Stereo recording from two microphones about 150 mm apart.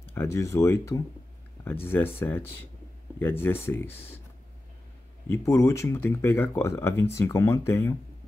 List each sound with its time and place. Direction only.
0.1 s speech: 20° left (ahead or behind)
5.3 s speech: 20° left (ahead or behind)